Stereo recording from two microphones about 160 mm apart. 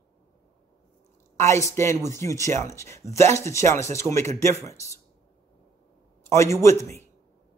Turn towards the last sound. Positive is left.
turn(degrees=15)  # may be behind; listen again after turning